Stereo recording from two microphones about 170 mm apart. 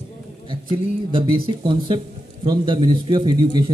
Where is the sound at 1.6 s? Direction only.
30° right (ahead or behind).